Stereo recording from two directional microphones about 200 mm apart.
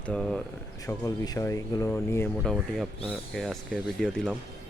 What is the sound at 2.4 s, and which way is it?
Speech, centre (ahead or behind).